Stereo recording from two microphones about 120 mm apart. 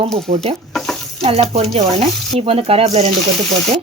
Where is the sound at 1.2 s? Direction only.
55° right (ahead or behind).